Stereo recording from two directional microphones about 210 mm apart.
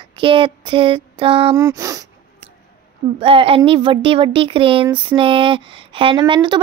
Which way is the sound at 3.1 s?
25° right (ahead or behind).